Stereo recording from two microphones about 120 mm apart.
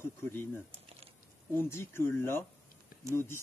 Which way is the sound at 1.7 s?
20° left (ahead or behind).